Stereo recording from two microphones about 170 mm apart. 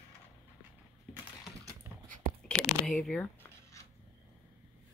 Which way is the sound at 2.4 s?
5° left (ahead or behind).